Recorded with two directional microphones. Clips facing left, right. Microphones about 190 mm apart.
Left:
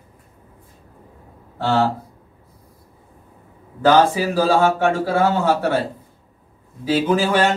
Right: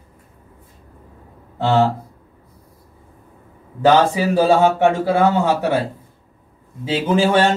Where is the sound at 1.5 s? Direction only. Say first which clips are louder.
Right 2 dB; 20° right (ahead or behind).